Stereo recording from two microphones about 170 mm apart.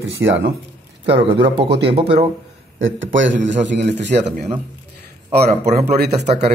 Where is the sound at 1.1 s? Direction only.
30° right (ahead or behind).